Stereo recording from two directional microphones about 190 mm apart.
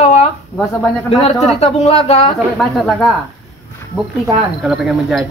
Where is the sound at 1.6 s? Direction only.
35° left (ahead or behind).